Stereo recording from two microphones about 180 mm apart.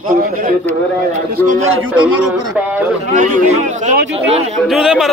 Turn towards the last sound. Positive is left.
turn(degrees=-5)  # may be behind; listen again after turning